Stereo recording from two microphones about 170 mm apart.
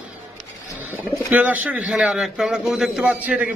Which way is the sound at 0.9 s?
20° left (ahead or behind).